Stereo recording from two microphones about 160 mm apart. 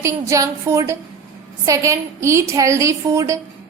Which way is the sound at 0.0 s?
20° right (ahead or behind).